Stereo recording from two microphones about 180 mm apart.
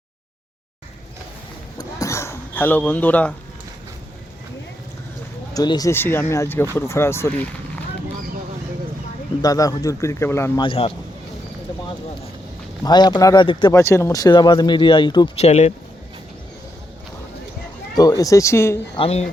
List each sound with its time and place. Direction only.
1.8 s a sound: 15° left (ahead or behind)
5.5 s speech: 20° left (ahead or behind)
9.4 s speech: 20° left (ahead or behind)
10.6 s a man's voice: 30° left (ahead or behind)
12.8 s speech: 20° left (ahead or behind)
15.4 s a man's voice: 35° left (ahead or behind)
17.9 s speech: 20° left (ahead or behind)
18.9 s a man's voice: 35° left (ahead or behind)